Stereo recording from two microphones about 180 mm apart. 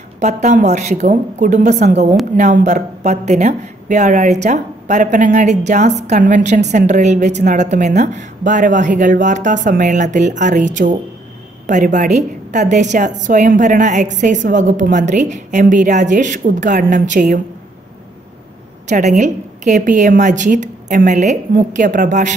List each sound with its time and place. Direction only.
0.2 s a woman's voice: 40° right (ahead or behind)
18.9 s a woman's voice: 40° right (ahead or behind)